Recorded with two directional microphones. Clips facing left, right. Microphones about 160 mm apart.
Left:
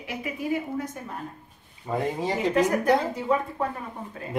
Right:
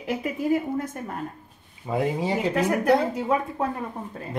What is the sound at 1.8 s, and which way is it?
Speech, 5° right (ahead or behind).